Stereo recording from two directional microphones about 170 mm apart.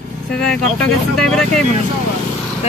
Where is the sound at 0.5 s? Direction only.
5° left (ahead or behind).